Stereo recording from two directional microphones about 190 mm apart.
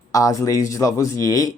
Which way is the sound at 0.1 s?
15° left (ahead or behind).